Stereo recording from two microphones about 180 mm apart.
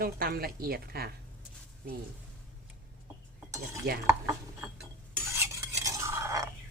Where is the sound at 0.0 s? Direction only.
55° right (ahead or behind).